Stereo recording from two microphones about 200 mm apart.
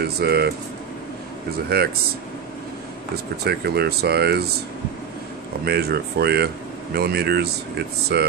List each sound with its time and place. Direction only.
0.0 s speech: 50° right (ahead or behind)
1.7 s speech: 55° right (ahead or behind)
3.4 s speech: 55° right (ahead or behind)
5.7 s speech: 50° right (ahead or behind)